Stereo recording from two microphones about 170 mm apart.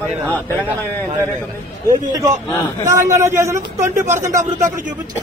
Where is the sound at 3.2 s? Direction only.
15° right (ahead or behind).